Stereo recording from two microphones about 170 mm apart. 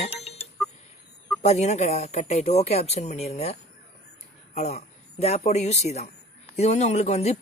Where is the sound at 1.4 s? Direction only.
40° left (ahead or behind).